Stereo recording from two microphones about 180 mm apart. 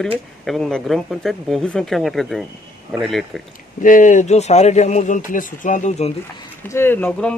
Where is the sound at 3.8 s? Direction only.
45° left (ahead or behind).